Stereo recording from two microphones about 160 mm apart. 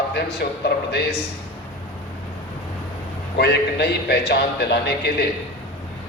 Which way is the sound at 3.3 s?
90° left.